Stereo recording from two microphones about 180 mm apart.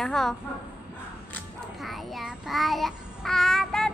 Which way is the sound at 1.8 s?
Centre (ahead or behind).